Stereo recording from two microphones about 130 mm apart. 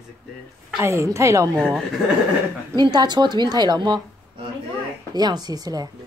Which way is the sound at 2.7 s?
35° right (ahead or behind).